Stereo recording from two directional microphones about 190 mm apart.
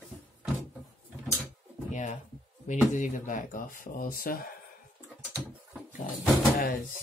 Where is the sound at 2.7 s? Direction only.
40° left (ahead or behind).